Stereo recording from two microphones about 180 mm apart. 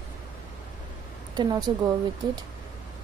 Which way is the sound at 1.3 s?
20° right (ahead or behind).